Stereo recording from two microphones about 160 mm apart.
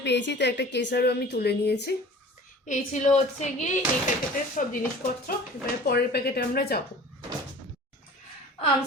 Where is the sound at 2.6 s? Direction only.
50° left (ahead or behind).